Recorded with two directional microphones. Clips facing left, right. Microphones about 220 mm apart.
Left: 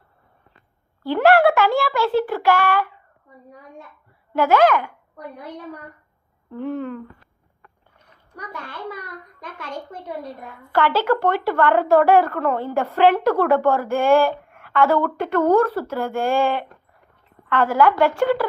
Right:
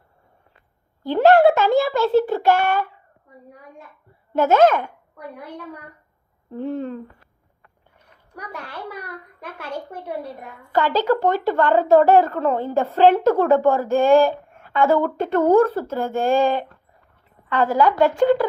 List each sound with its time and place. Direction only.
1.0 s a sound: 20° right (ahead or behind)
2.2 s a woman's voice: 25° right (ahead or behind)
4.4 s a woman's voice: 25° right (ahead or behind)
6.5 s a woman's voice: 25° right (ahead or behind)
8.4 s a child's voice: 35° right (ahead or behind)
10.8 s a woman's voice: 15° right (ahead or behind)
17.5 s a woman's voice: 20° right (ahead or behind)